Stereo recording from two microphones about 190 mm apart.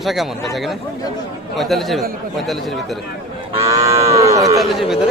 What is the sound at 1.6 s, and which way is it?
Speech, centre (ahead or behind).